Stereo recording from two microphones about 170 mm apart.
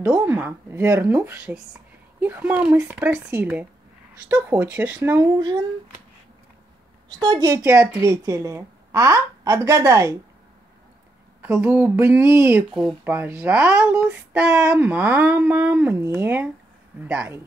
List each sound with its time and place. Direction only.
0.1 s a woman's voice: 10° right (ahead or behind)
7.2 s a woman's voice: 25° right (ahead or behind)
11.4 s a woman's voice: 10° right (ahead or behind)